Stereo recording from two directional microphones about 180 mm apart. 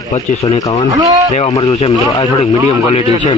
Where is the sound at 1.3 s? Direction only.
35° left (ahead or behind).